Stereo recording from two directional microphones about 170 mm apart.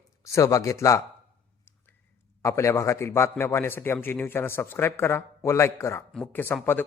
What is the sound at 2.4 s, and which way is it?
A man's voice, 15° left (ahead or behind).